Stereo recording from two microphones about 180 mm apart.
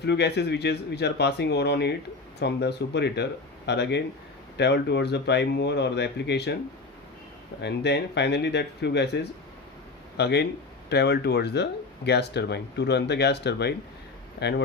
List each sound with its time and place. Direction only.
0.0 s speech: 65° left (ahead or behind)
7.6 s speech: 70° left (ahead or behind)